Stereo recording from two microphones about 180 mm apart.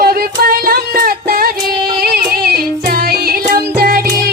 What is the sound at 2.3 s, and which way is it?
Music, 60° right (ahead or behind).